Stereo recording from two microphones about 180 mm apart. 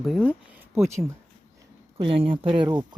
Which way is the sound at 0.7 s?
15° right (ahead or behind).